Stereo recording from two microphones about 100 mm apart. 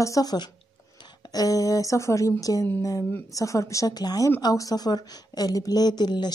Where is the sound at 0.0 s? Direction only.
35° left (ahead or behind).